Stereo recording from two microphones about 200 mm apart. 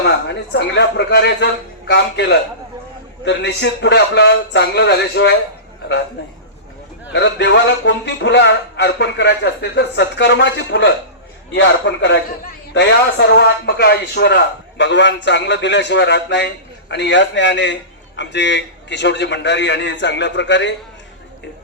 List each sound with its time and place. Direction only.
0.0 s a man's voice: 60° left (ahead or behind)